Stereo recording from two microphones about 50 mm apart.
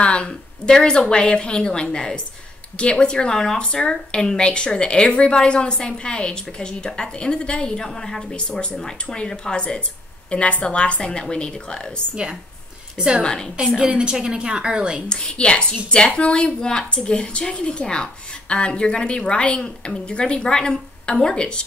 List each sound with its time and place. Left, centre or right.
0.0 s a woman's voice: left
12.2 s a woman's voice: centre
13.2 s a woman's voice: centre
13.7 s a woman's voice: centre
15.0 s a woman's voice: centre